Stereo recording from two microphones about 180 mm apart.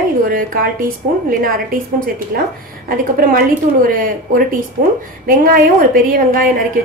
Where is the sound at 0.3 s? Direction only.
50° right (ahead or behind).